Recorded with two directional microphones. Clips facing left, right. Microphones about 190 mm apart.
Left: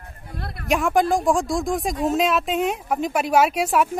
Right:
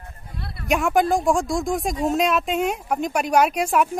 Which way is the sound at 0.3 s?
50° left (ahead or behind).